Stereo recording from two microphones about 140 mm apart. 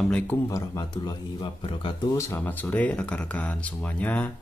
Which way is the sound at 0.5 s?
25° left (ahead or behind).